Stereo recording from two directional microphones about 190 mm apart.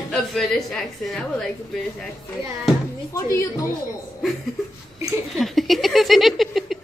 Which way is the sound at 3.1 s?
15° left (ahead or behind).